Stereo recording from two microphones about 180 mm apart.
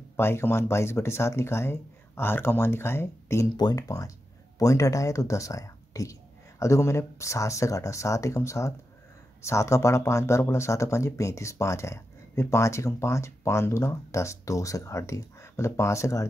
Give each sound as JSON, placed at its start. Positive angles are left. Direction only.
{"t": 0.2, "sound": "speech", "side_deg": 15}